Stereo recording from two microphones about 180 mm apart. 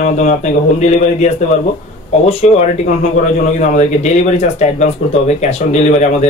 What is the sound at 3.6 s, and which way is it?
A man's voice, 40° left (ahead or behind).